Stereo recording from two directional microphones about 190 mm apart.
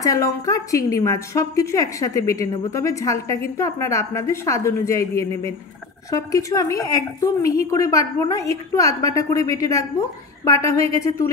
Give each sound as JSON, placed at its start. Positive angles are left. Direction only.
{"t": 0.0, "sound": "a woman's voice", "side_deg": 20}